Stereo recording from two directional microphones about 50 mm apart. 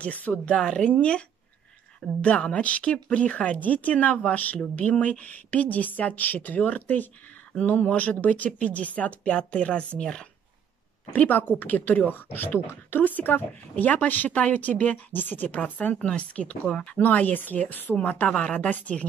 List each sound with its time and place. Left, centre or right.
0.0 s speech: left
0.6 s speech: centre
2.2 s a woman's voice: left
11.1 s a woman's voice: left
16.0 s speech: left
17.0 s a woman's voice: left